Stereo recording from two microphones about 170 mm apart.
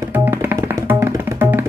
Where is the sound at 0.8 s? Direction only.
10° right (ahead or behind).